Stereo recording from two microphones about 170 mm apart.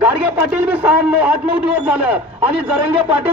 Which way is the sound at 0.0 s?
10° right (ahead or behind).